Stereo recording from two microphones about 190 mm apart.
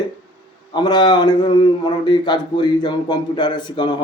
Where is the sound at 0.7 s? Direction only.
20° left (ahead or behind).